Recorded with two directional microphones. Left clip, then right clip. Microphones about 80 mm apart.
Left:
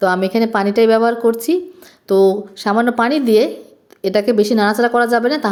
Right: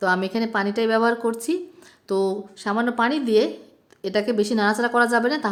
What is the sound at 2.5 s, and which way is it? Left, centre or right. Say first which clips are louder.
A woman's voice: left 8 dB; left.